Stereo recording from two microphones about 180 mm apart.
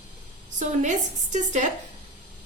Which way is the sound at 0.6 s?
45° right (ahead or behind).